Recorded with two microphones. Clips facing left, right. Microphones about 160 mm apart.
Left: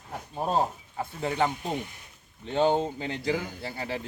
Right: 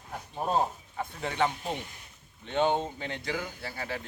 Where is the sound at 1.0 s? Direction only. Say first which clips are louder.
Left 2 dB; 35° left (ahead or behind).